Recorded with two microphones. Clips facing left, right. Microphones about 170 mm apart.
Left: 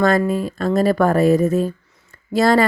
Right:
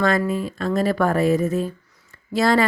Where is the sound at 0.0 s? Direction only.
40° left (ahead or behind).